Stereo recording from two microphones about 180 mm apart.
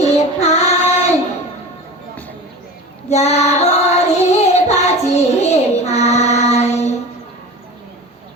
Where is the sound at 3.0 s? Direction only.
40° left (ahead or behind).